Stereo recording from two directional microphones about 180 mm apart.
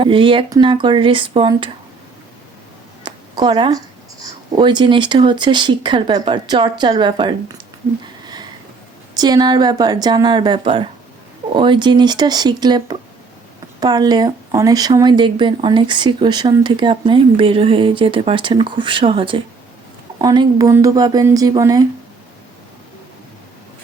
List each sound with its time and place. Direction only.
0.0 s speech: 30° right (ahead or behind)
3.0 s speech: 25° right (ahead or behind)
9.1 s speech: 20° right (ahead or behind)